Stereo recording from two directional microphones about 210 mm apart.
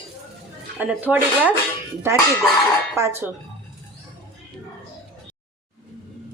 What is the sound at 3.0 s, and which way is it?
Speech, 10° right (ahead or behind).